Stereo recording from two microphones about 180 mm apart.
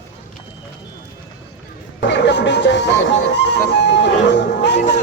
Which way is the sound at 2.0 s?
75° left (ahead or behind).